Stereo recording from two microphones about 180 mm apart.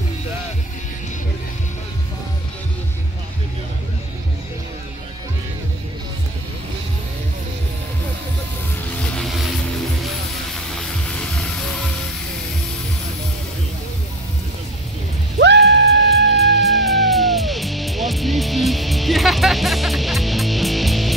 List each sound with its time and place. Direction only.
9.1 s vehicle: centre (ahead or behind)
10.5 s vehicle: 5° left (ahead or behind)
15.3 s music: 75° right (ahead or behind)
16.1 s music: centre (ahead or behind)